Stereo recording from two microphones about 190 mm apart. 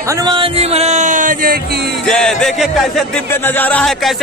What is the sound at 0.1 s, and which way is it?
Speech, 25° right (ahead or behind).